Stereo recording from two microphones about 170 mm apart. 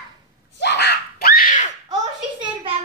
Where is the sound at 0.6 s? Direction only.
80° left; by 1.6 s 55° left (ahead or behind).